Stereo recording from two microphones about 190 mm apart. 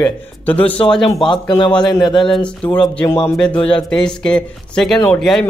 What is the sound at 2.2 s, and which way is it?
Speech, 5° left (ahead or behind).